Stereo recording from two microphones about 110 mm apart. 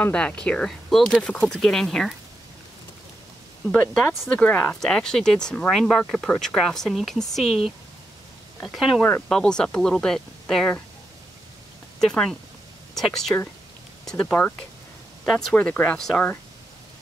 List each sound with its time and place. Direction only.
0.0 s speech: 15° left (ahead or behind)
3.7 s speech: 10° left (ahead or behind)
12.0 s speech: 5° left (ahead or behind)
14.2 s speech: 15° left (ahead or behind)
15.2 s speech: centre (ahead or behind)
15.5 s speech: 15° left (ahead or behind)